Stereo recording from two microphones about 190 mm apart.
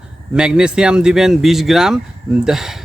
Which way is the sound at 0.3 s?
5° right (ahead or behind).